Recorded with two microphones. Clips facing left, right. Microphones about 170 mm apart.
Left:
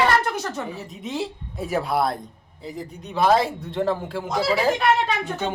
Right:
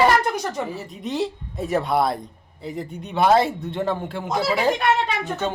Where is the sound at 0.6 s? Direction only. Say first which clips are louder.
Right 2 dB; centre (ahead or behind).